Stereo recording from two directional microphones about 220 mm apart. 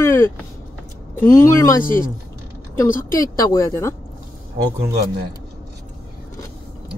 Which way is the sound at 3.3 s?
15° left (ahead or behind).